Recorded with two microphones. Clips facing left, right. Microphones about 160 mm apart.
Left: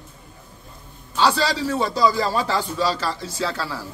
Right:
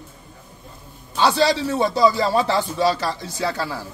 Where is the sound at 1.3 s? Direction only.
20° right (ahead or behind).